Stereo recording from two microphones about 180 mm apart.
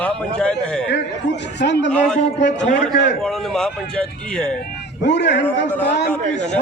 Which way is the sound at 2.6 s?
40° left (ahead or behind).